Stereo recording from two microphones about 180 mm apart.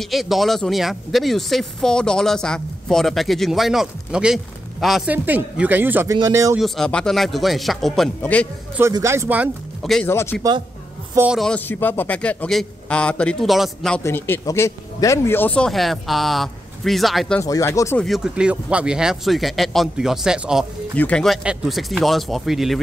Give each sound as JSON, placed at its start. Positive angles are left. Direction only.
{"t": 0.0, "sound": "speech", "side_deg": 0}
{"t": 6.6, "sound": "speech", "side_deg": 5}
{"t": 8.7, "sound": "speech", "side_deg": -15}
{"t": 9.8, "sound": "speech", "side_deg": 0}
{"t": 10.0, "sound": "speech", "side_deg": 15}
{"t": 11.1, "sound": "speech", "side_deg": -5}
{"t": 17.4, "sound": "speech", "side_deg": 15}
{"t": 18.0, "sound": "speech", "side_deg": 0}